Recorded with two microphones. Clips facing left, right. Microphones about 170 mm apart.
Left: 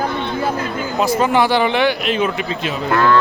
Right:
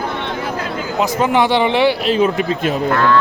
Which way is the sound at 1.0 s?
20° right (ahead or behind).